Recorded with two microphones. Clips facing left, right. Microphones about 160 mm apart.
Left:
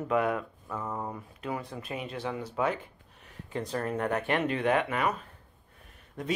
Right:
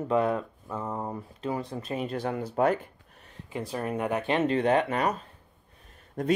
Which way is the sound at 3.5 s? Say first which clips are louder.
Right 1 dB; 10° right (ahead or behind).